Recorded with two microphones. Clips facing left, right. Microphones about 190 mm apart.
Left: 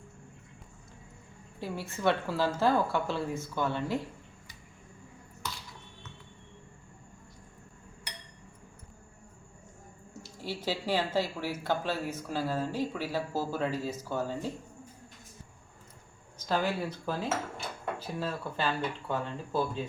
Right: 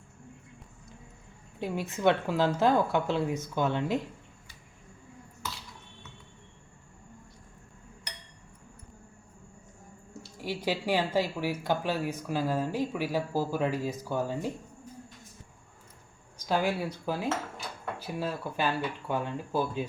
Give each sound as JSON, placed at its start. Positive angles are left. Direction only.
{"t": 1.5, "sound": "speech", "side_deg": -20}
{"t": 10.4, "sound": "speech", "side_deg": -15}
{"t": 16.5, "sound": "speech", "side_deg": -10}